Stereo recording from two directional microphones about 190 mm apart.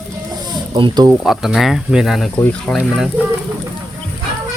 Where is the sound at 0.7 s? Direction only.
25° right (ahead or behind).